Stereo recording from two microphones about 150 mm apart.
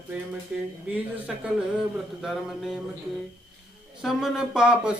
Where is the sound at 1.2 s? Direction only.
5° right (ahead or behind).